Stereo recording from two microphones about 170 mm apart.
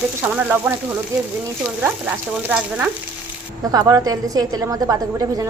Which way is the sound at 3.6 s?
20° right (ahead or behind).